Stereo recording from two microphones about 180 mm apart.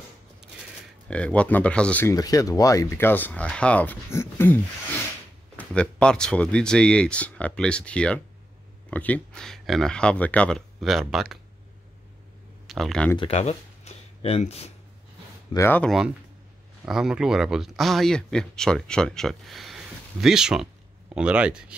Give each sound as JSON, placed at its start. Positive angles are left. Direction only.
{"t": 1.0, "sound": "speech", "side_deg": 5}
{"t": 2.1, "sound": "speech", "side_deg": 20}
{"t": 5.6, "sound": "speech", "side_deg": 5}
{"t": 12.6, "sound": "speech", "side_deg": 0}
{"t": 13.2, "sound": "speech", "side_deg": 35}
{"t": 15.5, "sound": "speech", "side_deg": 10}
{"t": 16.8, "sound": "speech", "side_deg": -5}